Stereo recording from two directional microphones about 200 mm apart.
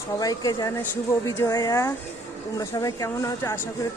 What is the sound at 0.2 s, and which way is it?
Speech, 20° left (ahead or behind).